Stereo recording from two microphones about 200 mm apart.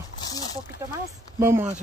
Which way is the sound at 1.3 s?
10° right (ahead or behind).